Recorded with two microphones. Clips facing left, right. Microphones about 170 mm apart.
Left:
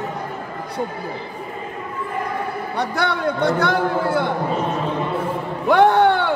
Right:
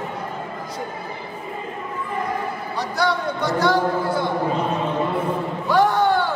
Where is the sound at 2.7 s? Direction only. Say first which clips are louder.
Even; 60° left (ahead or behind).